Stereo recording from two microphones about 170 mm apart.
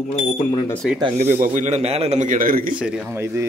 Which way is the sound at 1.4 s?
45° right (ahead or behind).